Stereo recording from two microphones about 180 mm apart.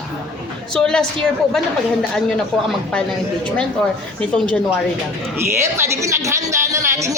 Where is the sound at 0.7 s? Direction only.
5° left (ahead or behind).